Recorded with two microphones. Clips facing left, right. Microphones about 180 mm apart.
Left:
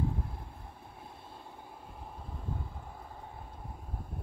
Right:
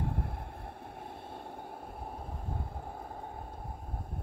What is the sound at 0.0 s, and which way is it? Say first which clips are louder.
Vehicle: left 1 dB; 65° right (ahead or behind).